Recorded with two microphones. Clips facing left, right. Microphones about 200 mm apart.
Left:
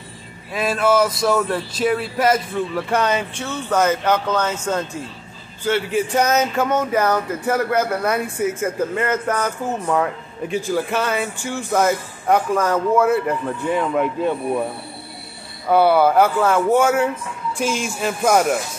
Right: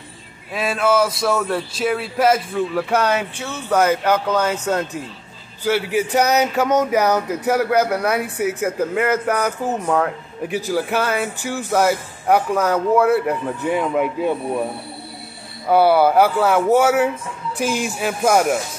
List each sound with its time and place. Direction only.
0.5 s speech: centre (ahead or behind)
15.7 s speech: 5° right (ahead or behind)
17.6 s music: 60° right (ahead or behind)
18.0 s speech: 5° right (ahead or behind)